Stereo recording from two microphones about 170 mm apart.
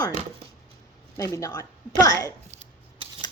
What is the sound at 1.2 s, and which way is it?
Speech, 20° left (ahead or behind).